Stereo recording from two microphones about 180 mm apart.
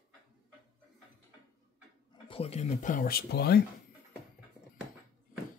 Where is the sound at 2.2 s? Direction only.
30° left (ahead or behind); by 3.5 s 60° left (ahead or behind).